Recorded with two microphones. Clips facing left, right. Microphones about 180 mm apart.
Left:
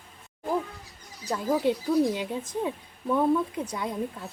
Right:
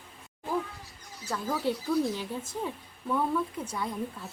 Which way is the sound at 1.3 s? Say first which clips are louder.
Left 5 dB; 15° left (ahead or behind).